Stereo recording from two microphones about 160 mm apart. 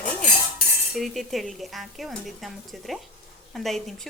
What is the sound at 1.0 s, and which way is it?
Speech, centre (ahead or behind).